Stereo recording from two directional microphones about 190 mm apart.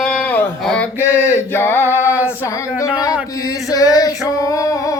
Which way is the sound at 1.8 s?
10° right (ahead or behind).